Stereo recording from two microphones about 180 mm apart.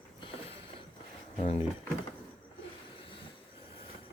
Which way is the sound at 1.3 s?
35° left (ahead or behind).